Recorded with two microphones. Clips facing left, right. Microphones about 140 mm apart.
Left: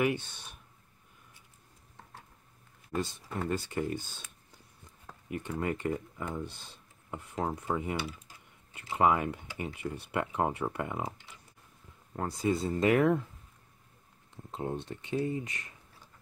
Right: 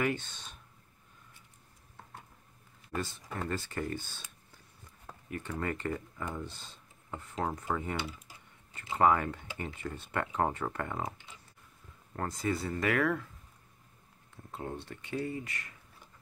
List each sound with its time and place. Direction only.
0.0 s speech: 15° left (ahead or behind)
3.4 s speech: 15° left (ahead or behind)
5.3 s speech: 15° left (ahead or behind)
12.2 s speech: 10° left (ahead or behind)
12.5 s speech: 20° left (ahead or behind)
14.3 s speech: 20° left (ahead or behind)